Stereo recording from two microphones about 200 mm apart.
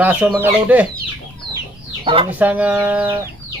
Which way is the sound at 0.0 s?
5° right (ahead or behind).